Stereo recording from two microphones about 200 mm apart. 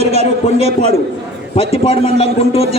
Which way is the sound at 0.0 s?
30° right (ahead or behind).